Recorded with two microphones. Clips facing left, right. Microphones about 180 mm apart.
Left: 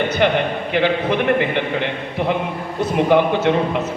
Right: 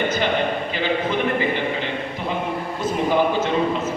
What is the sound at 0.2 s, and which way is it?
A man's voice, 65° left (ahead or behind).